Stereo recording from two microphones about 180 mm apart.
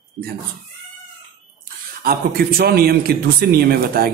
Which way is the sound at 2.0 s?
55° right (ahead or behind).